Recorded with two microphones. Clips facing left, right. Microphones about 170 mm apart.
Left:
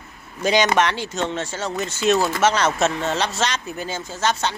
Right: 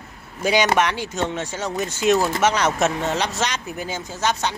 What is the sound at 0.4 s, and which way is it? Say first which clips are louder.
Speech: even; 10° right (ahead or behind).